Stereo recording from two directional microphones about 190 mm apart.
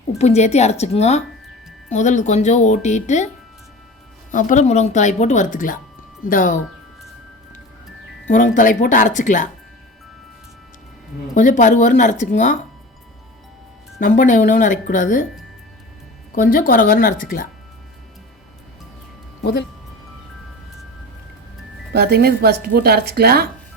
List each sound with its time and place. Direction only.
0.2 s speech: 35° left (ahead or behind)
4.3 s speech: 40° left (ahead or behind)
8.3 s speech: 40° left (ahead or behind)
11.3 s speech: 40° left (ahead or behind)
14.0 s speech: 40° left (ahead or behind)
16.3 s speech: 45° left (ahead or behind)
21.9 s speech: 55° right (ahead or behind)